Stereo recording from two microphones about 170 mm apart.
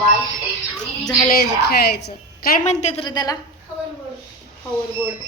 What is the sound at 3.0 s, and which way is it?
Speech, 25° left (ahead or behind).